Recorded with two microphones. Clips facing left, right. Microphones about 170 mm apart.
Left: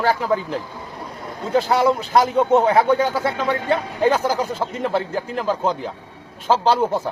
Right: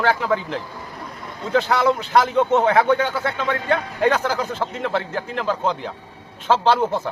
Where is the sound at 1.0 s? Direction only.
30° left (ahead or behind).